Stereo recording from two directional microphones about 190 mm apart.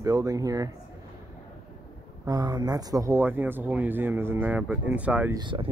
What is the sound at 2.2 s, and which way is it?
Speech, 20° right (ahead or behind).